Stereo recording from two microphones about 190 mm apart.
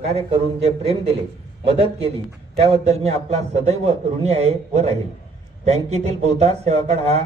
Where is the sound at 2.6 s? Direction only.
35° right (ahead or behind).